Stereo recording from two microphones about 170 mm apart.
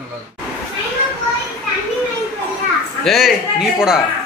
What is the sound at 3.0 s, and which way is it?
Speech, centre (ahead or behind).